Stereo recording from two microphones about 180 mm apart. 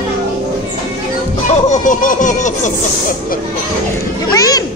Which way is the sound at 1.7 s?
45° left (ahead or behind).